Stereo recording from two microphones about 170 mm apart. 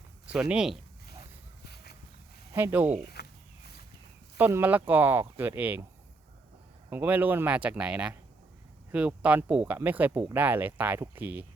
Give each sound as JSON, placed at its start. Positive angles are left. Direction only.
{"t": 0.3, "sound": "speech", "side_deg": -5}
{"t": 1.6, "sound": "a sound", "side_deg": 70}
{"t": 2.5, "sound": "speech", "side_deg": -15}
{"t": 3.1, "sound": "a sound", "side_deg": 70}
{"t": 4.4, "sound": "speech", "side_deg": -10}
{"t": 6.9, "sound": "speech", "side_deg": -10}